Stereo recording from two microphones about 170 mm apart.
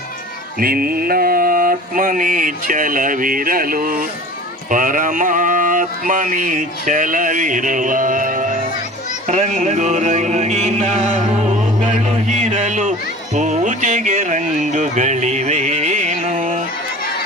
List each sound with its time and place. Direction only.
0.6 s mantra: 60° right (ahead or behind)
4.7 s a sound: 50° right (ahead or behind)
13.3 s speech: 45° right (ahead or behind)